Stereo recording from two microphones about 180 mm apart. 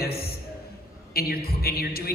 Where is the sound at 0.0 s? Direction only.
60° left (ahead or behind).